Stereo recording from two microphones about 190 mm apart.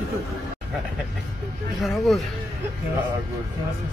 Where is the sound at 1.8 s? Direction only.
Centre (ahead or behind).